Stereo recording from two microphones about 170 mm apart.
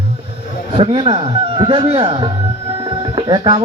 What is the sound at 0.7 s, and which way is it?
Speech, 30° right (ahead or behind).